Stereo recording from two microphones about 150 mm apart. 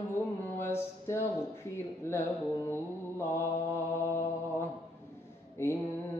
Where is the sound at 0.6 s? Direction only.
15° left (ahead or behind).